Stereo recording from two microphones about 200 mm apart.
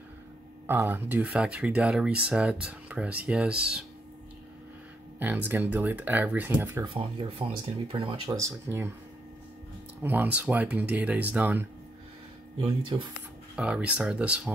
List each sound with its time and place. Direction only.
0.7 s speech: 10° right (ahead or behind)
5.2 s speech: 10° right (ahead or behind)
6.8 s speech: 25° right (ahead or behind)
8.4 s speech: 15° right (ahead or behind)
10.0 s speech: 10° right (ahead or behind)
12.5 s speech: 25° right (ahead or behind)
13.6 s speech: 5° right (ahead or behind)